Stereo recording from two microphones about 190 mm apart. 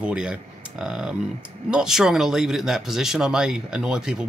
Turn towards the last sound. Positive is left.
turn(degrees=-5)  # may be behind; listen again after turning